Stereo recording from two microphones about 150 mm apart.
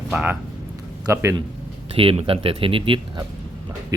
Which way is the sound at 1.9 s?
40° right (ahead or behind).